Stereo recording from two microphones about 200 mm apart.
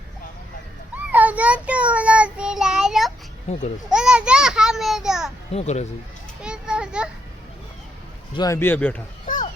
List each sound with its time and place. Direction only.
0.9 s child singing: 10° right (ahead or behind)
3.5 s speech: 35° left (ahead or behind)
3.8 s a child's voice: 5° right (ahead or behind)
5.5 s speech: 35° left (ahead or behind)
6.4 s children playing: 5° right (ahead or behind)
8.4 s a man's voice: 15° left (ahead or behind)
9.2 s children playing: 40° left (ahead or behind)